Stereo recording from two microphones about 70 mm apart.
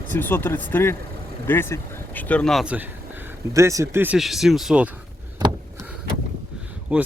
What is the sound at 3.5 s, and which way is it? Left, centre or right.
Speech, right.